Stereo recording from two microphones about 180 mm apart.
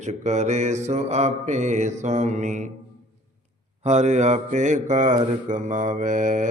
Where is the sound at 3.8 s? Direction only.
40° right (ahead or behind).